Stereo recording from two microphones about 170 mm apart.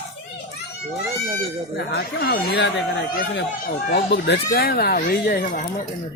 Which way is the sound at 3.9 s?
75° left (ahead or behind).